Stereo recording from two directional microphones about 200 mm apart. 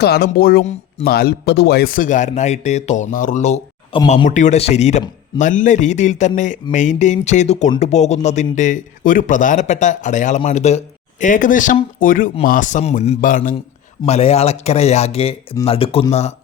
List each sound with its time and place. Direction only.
0.0 s speech: 50° left (ahead or behind); by 16.0 s 30° left (ahead or behind)